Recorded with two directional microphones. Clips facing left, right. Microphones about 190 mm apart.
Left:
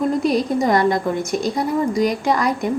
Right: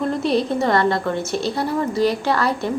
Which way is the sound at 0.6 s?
15° left (ahead or behind).